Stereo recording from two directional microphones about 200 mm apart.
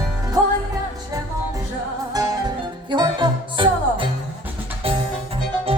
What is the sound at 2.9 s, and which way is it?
Music, 25° right (ahead or behind).